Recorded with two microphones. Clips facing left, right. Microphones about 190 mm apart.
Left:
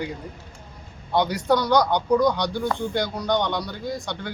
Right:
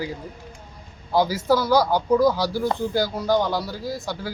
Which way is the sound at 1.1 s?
Centre (ahead or behind).